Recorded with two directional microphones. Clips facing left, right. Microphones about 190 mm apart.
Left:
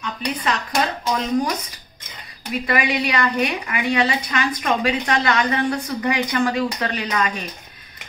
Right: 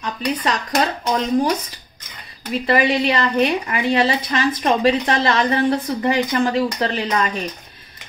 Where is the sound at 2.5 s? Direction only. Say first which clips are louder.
Right 4 dB; 30° right (ahead or behind).